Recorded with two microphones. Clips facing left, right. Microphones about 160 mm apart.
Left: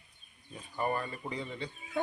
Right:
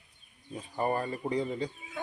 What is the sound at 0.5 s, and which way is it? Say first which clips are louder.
Speech: right 3 dB; 35° right (ahead or behind).